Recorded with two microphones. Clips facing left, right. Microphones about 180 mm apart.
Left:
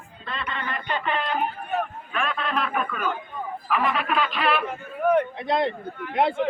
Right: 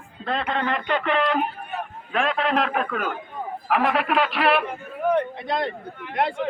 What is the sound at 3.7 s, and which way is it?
Speech, 75° right (ahead or behind).